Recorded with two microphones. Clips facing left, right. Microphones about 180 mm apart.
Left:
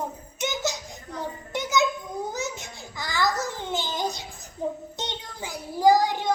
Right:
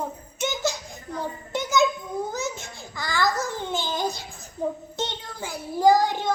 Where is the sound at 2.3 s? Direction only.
20° left (ahead or behind).